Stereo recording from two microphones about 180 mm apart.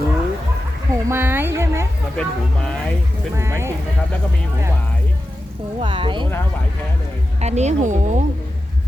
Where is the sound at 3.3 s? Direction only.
15° right (ahead or behind).